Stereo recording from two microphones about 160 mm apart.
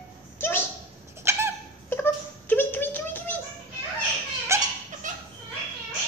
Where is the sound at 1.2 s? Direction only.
15° right (ahead or behind).